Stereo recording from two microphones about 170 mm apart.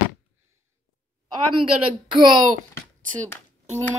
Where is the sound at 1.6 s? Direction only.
25° right (ahead or behind).